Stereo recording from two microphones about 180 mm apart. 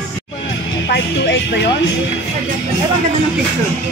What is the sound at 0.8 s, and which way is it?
Speech, 70° left (ahead or behind).